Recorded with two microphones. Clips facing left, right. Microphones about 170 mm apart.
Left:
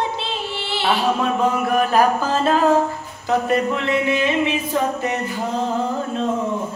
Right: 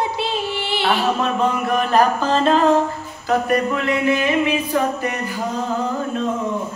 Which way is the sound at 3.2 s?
25° left (ahead or behind).